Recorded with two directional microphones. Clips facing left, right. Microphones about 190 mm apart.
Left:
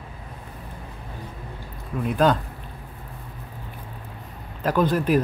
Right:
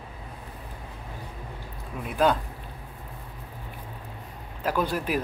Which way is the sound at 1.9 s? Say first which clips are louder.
Left 8 dB; 10° right (ahead or behind).